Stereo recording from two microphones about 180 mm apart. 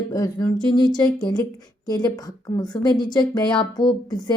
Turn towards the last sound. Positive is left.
turn(degrees=20)  # may be behind; listen again after turning